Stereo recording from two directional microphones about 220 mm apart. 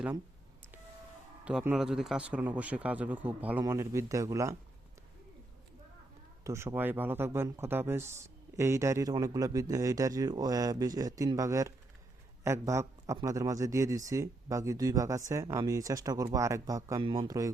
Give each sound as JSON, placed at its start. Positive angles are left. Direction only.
{"t": 1.5, "sound": "speech", "side_deg": -5}
{"t": 6.4, "sound": "speech", "side_deg": -15}